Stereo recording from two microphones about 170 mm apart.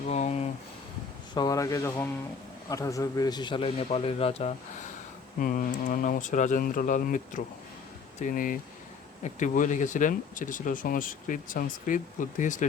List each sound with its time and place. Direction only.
0.1 s a sound: 40° left (ahead or behind)
1.3 s a man's voice: 25° left (ahead or behind)
5.4 s speech: 55° left (ahead or behind)